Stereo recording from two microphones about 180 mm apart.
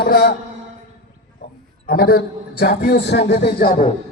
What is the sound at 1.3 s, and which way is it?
A man's voice, 60° left (ahead or behind).